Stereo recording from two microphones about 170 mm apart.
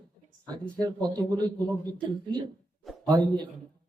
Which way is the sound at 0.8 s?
25° right (ahead or behind).